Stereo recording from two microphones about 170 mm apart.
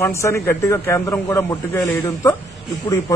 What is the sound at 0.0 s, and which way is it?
A man's voice, 15° left (ahead or behind).